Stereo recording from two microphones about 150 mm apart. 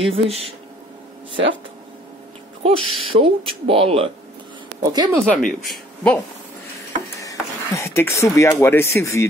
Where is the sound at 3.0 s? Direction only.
40° right (ahead or behind).